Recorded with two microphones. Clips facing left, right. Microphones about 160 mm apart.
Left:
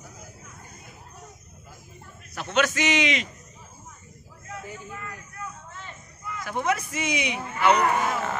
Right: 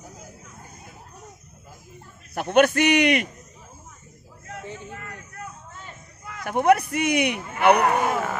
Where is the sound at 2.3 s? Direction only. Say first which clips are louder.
Right 7 dB; 55° right (ahead or behind).